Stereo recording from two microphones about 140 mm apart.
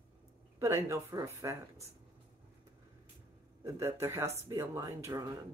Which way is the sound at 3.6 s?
20° right (ahead or behind).